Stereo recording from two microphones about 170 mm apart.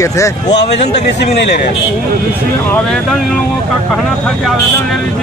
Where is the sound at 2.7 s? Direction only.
5° left (ahead or behind).